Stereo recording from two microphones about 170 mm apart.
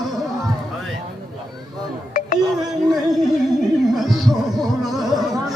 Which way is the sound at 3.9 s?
Centre (ahead or behind).